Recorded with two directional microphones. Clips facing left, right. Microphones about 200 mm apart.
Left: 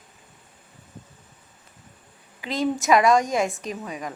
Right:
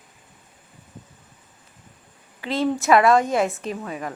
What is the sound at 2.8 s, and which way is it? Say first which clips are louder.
Speech: right 2 dB; 15° left (ahead or behind).